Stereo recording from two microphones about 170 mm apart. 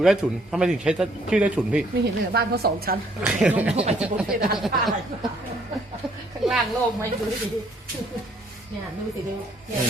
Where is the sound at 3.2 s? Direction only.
10° right (ahead or behind).